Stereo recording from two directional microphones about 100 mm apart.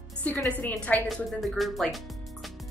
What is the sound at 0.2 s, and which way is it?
Speech, 15° left (ahead or behind).